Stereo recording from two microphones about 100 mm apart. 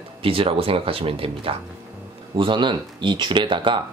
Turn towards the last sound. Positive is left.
turn(degrees=-55)  # may be behind; listen again after turning